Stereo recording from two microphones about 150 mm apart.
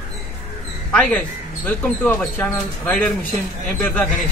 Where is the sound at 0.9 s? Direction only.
10° left (ahead or behind).